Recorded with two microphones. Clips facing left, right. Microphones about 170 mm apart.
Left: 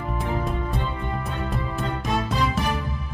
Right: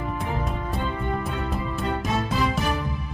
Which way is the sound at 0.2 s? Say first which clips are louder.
Left 2 dB; centre (ahead or behind).